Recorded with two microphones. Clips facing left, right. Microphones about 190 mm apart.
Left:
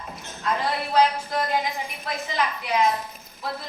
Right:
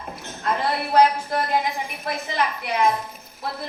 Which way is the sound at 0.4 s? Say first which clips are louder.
Right 2 dB; 55° right (ahead or behind).